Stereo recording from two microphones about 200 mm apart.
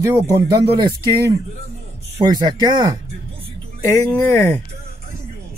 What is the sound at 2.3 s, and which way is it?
Speech, 20° right (ahead or behind).